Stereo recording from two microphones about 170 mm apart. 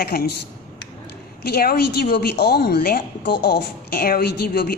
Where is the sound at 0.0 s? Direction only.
65° left (ahead or behind).